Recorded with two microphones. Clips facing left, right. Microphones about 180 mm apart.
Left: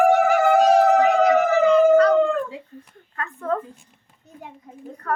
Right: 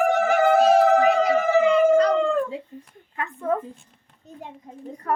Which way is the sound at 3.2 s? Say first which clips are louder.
Right 1 dB; 15° right (ahead or behind).